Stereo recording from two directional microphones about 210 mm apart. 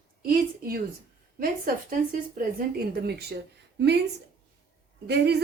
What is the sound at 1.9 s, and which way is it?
Speech, 40° right (ahead or behind).